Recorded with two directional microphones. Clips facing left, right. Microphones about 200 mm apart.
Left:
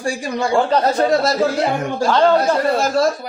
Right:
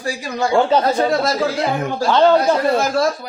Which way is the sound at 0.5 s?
Centre (ahead or behind).